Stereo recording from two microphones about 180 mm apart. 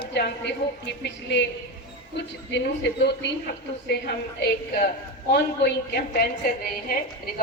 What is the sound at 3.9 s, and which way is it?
A woman's voice, 65° left (ahead or behind).